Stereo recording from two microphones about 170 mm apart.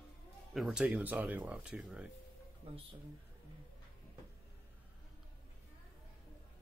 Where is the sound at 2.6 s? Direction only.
35° right (ahead or behind).